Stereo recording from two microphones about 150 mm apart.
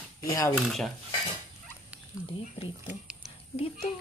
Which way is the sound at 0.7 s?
Centre (ahead or behind).